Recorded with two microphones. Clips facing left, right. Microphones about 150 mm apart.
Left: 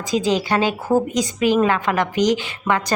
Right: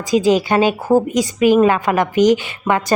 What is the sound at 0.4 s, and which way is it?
A woman's voice, 20° right (ahead or behind).